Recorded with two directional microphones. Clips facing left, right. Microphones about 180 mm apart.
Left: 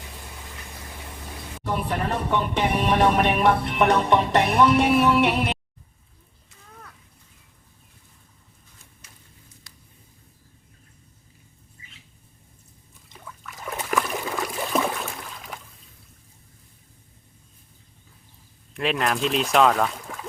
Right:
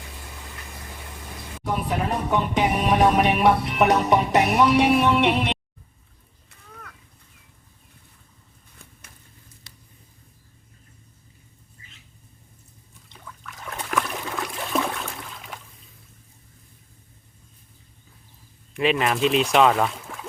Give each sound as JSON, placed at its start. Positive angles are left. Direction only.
{"t": 1.6, "sound": "music", "side_deg": -5}
{"t": 9.7, "sound": "a sound", "side_deg": -25}
{"t": 13.1, "sound": "trickle", "side_deg": 5}
{"t": 18.7, "sound": "speech", "side_deg": 0}